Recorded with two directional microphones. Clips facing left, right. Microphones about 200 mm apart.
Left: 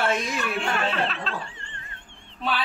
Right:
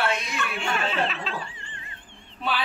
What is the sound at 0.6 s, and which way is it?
Snicker, centre (ahead or behind).